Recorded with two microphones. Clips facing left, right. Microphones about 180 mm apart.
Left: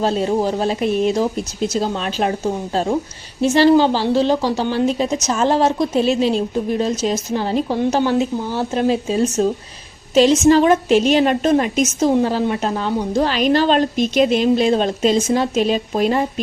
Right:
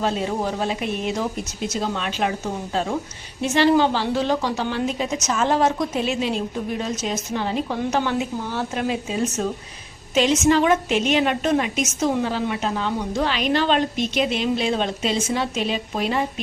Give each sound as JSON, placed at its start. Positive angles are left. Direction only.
{"t": 0.0, "sound": "a woman's voice", "side_deg": 35}
{"t": 3.4, "sound": "a woman's voice", "side_deg": 35}